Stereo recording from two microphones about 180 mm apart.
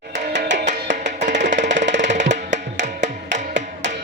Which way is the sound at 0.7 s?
45° right (ahead or behind).